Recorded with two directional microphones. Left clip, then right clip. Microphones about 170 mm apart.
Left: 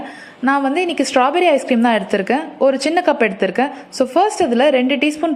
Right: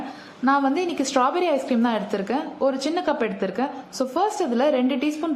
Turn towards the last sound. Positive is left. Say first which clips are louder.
# left 7 dB
turn(degrees=15)  # may be behind; listen again after turning